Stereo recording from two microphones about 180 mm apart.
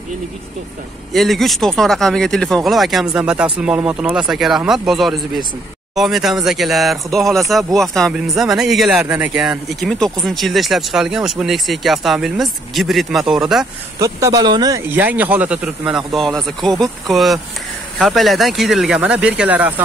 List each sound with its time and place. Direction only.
1.1 s speech: centre (ahead or behind)
13.9 s speech: 20° right (ahead or behind)
14.9 s speech: 10° right (ahead or behind)